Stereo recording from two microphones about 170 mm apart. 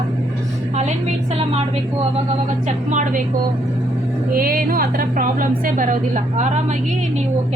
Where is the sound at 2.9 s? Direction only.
50° right (ahead or behind).